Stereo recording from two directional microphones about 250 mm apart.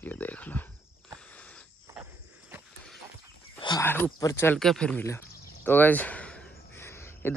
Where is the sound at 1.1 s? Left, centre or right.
Centre.